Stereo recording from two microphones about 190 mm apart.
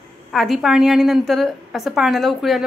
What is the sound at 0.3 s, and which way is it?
A woman's voice, centre (ahead or behind).